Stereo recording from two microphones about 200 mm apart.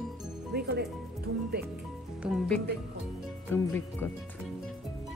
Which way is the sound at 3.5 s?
10° left (ahead or behind).